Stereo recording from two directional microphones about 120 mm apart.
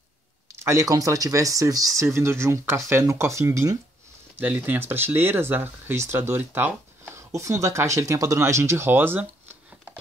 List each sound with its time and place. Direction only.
0.5 s speech: 25° right (ahead or behind)